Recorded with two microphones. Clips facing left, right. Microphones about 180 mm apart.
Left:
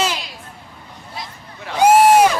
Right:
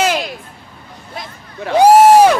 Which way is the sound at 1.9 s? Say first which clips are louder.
Right 4 dB; 40° right (ahead or behind).